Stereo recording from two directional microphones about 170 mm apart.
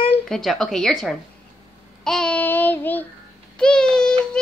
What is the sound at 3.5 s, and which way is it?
Speech, 5° left (ahead or behind).